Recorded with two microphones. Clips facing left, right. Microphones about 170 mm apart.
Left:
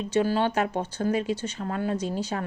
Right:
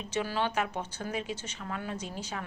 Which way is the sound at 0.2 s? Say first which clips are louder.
Left 7 dB; 50° left (ahead or behind).